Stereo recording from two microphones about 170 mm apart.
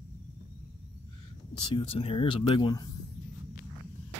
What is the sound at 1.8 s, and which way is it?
Speech, 30° left (ahead or behind).